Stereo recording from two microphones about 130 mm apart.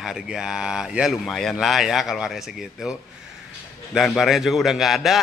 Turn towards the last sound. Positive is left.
turn(degrees=0)  # may be behind; listen again after turning